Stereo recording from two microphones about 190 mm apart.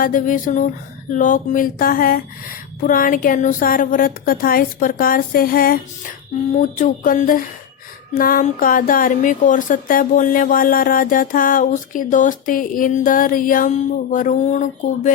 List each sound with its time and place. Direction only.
0.0 s speech: 45° left (ahead or behind)